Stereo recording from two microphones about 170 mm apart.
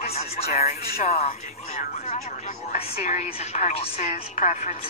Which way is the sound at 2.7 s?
45° left (ahead or behind).